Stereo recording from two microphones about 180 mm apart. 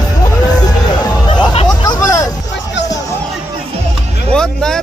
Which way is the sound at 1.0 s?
25° left (ahead or behind).